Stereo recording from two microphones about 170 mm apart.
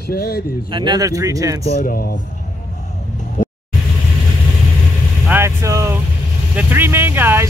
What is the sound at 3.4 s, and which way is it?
Vehicle, 50° left (ahead or behind).